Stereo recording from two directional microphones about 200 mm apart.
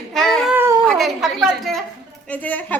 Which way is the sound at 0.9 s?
Centre (ahead or behind).